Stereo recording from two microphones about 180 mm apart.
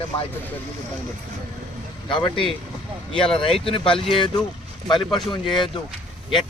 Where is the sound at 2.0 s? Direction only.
25° left (ahead or behind).